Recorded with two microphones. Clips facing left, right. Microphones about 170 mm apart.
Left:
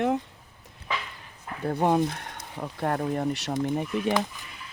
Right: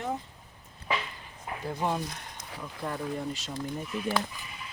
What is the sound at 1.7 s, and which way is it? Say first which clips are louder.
Speech: left 8 dB; 55° left (ahead or behind).